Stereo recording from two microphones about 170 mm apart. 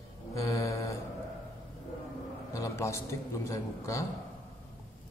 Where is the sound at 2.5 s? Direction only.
20° left (ahead or behind).